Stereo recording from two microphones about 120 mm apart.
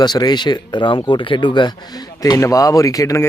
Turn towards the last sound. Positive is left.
turn(degrees=25)  # may be behind; listen again after turning